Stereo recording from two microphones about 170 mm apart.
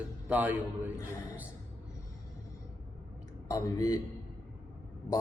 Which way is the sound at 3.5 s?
20° left (ahead or behind).